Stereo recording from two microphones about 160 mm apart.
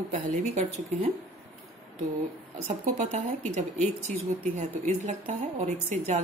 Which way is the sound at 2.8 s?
50° right (ahead or behind).